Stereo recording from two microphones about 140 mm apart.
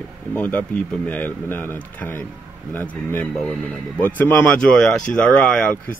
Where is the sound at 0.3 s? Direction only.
10° left (ahead or behind).